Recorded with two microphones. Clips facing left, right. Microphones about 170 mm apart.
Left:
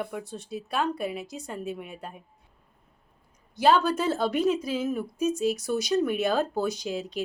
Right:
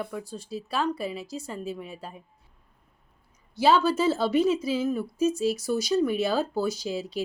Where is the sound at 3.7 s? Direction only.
5° right (ahead or behind).